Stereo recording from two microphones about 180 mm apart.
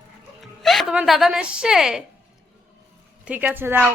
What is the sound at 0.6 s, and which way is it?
Speech, centre (ahead or behind).